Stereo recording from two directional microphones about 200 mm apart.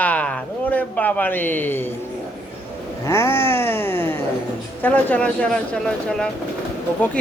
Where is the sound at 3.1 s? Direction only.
10° left (ahead or behind).